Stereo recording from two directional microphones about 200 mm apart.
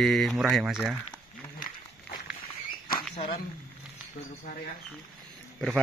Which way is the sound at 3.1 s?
30° left (ahead or behind).